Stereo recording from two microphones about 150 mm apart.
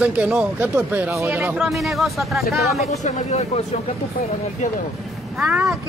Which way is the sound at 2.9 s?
50° left (ahead or behind).